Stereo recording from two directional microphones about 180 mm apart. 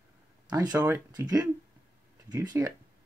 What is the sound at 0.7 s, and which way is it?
Speech, 15° right (ahead or behind).